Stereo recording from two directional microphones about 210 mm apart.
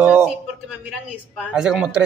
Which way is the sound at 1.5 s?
5° right (ahead or behind).